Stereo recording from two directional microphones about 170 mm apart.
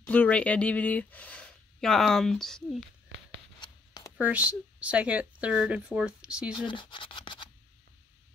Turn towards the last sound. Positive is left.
turn(degrees=30)  # may be behind; listen again after turning